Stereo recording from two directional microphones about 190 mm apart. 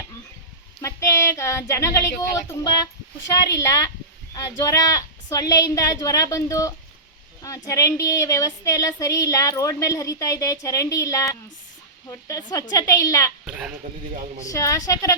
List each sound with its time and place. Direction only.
0.8 s speech: 15° left (ahead or behind)
3.5 s speech: 15° left (ahead or behind)
13.4 s a sound: 5° right (ahead or behind)
14.4 s speech: 15° left (ahead or behind)